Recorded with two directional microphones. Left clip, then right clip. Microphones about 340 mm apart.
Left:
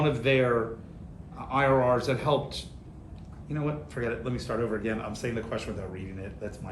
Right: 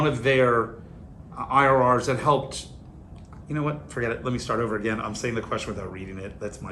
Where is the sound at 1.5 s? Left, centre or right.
Centre.